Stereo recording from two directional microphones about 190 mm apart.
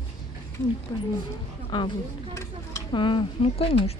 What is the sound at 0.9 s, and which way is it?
Speech, 20° left (ahead or behind).